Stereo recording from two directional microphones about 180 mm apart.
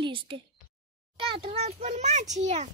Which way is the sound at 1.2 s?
30° right (ahead or behind).